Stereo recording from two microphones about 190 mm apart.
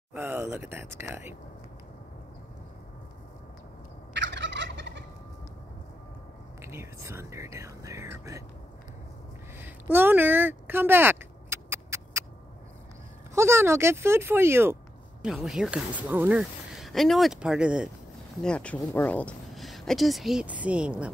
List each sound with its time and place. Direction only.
0.1 s speech: 10° right (ahead or behind)
4.1 s fowl: 70° right (ahead or behind)
6.6 s speech: 15° right (ahead or behind)
9.6 s a sound: 10° right (ahead or behind)
13.3 s speech: 15° right (ahead or behind)
18.4 s speech: 5° left (ahead or behind)